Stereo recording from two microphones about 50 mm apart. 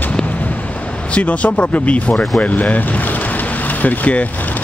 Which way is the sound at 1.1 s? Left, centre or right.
Left.